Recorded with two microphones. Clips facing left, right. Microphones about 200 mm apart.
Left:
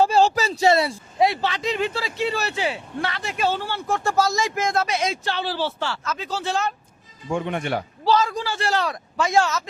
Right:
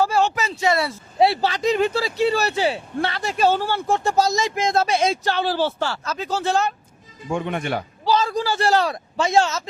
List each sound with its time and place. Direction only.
0.0 s speech: 30° left (ahead or behind)
1.2 s speech: 35° right (ahead or behind)
3.8 s speech: 20° right (ahead or behind); by 6.6 s 45° right (ahead or behind)
8.1 s a man's voice: 30° right (ahead or behind)